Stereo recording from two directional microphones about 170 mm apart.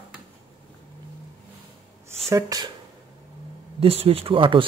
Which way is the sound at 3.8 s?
35° right (ahead or behind).